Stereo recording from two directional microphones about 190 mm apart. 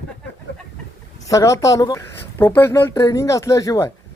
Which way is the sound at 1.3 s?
15° left (ahead or behind).